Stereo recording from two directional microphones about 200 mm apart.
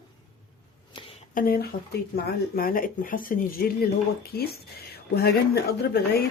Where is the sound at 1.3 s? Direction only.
45° left (ahead or behind).